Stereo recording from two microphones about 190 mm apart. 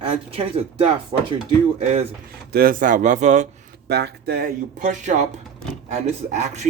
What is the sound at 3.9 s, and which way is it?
Speech, 60° right (ahead or behind).